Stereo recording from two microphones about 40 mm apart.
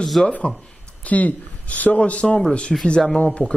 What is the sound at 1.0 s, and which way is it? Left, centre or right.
A man's voice, left.